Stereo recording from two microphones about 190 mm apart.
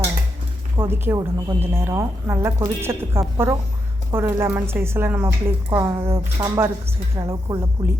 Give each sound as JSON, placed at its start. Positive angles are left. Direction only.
{"t": 0.8, "sound": "a woman's voice", "side_deg": -10}